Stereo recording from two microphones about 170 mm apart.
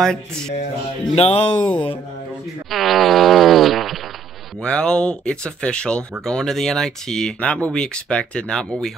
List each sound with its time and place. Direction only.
0.0 s speech: 5° left (ahead or behind)
1.1 s speech: 35° left (ahead or behind)
2.7 s fart: centre (ahead or behind)
4.6 s speech: 5° left (ahead or behind)